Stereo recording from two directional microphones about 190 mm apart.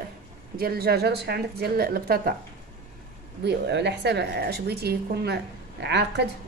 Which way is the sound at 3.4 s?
65° right (ahead or behind).